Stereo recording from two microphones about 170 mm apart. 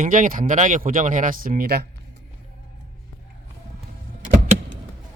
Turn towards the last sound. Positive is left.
turn(degrees=-45)  # may be behind; listen again after turning